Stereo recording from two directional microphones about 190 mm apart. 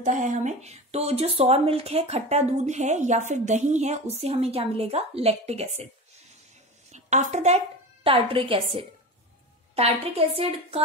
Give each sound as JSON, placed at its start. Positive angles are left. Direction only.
{"t": 0.0, "sound": "speech", "side_deg": -40}
{"t": 6.9, "sound": "a woman's voice", "side_deg": -40}